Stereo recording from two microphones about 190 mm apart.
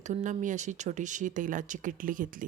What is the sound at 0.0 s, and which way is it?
A woman's voice, 40° right (ahead or behind).